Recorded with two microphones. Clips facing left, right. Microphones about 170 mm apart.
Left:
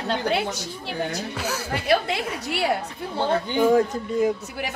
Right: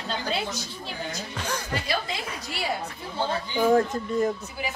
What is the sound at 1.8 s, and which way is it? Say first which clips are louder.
A woman's voice: left 8 dB; 65° left (ahead or behind).